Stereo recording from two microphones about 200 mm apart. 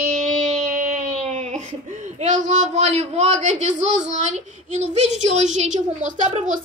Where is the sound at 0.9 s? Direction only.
35° right (ahead or behind).